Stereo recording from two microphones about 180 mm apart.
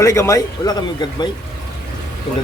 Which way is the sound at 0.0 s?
15° left (ahead or behind).